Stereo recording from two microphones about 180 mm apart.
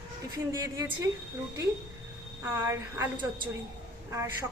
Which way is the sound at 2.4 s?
15° right (ahead or behind).